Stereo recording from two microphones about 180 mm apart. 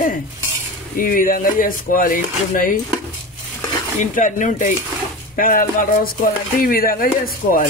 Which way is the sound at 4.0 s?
45° left (ahead or behind).